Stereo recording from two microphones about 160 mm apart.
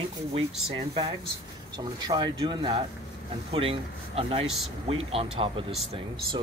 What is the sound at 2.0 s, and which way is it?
Speech, 25° right (ahead or behind).